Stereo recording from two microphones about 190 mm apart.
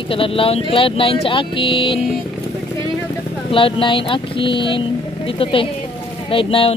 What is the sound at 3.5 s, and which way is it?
Speech, 25° left (ahead or behind).